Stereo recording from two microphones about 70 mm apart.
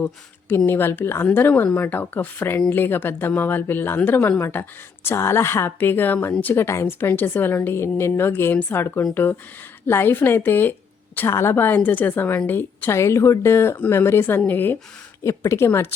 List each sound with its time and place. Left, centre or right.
0.0 s a woman's voice: left
6.8 s a woman's voice: left
12.9 s a woman's voice: left
15.2 s a woman's voice: left